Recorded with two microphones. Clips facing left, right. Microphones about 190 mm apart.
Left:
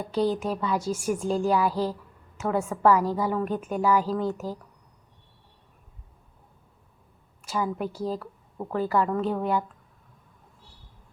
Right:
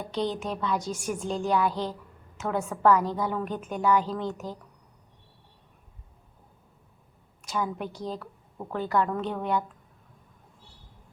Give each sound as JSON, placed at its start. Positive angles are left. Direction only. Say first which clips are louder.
{"t": 0.1, "sound": "a woman's voice", "louder": "left 5 dB", "side_deg": 5}
{"t": 7.4, "sound": "a woman's voice", "louder": "left 2 dB", "side_deg": 5}